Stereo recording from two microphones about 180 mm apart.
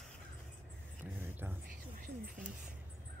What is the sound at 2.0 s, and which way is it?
Speech, 50° right (ahead or behind).